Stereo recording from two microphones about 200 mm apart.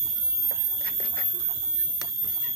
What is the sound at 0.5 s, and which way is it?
Squeal, 45° right (ahead or behind).